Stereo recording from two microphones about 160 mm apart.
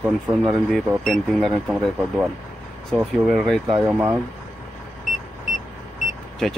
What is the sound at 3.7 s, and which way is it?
Speech, 20° right (ahead or behind).